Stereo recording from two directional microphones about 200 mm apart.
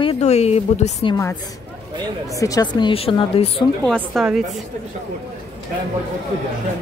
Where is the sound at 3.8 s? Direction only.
Centre (ahead or behind).